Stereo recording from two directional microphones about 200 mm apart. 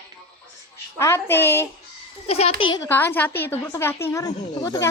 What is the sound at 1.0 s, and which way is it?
Speech, 10° left (ahead or behind).